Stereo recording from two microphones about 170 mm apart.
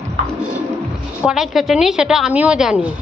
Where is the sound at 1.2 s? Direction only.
Centre (ahead or behind).